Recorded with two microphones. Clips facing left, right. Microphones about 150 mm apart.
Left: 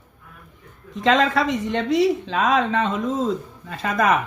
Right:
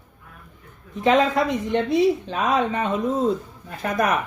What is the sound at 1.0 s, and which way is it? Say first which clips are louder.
Speech: even; 90° left.